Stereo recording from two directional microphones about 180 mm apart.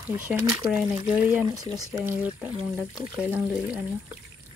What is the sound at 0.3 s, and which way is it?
Speech, 5° right (ahead or behind).